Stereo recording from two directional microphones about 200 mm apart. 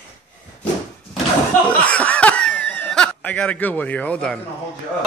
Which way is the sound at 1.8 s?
5° left (ahead or behind).